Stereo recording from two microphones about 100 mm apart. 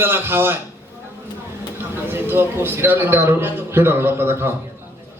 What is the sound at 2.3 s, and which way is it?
A man's voice, 20° right (ahead or behind).